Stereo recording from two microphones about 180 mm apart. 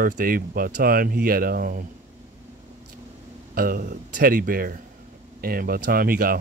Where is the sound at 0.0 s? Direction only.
55° right (ahead or behind).